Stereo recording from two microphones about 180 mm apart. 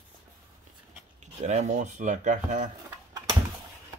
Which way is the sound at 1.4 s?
40° right (ahead or behind).